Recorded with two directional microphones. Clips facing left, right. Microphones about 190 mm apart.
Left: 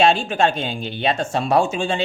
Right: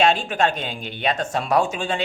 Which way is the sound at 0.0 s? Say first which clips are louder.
Left 2 dB; 30° left (ahead or behind).